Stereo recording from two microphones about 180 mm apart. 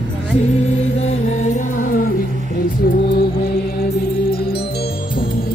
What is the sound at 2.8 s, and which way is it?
Music, 60° left (ahead or behind).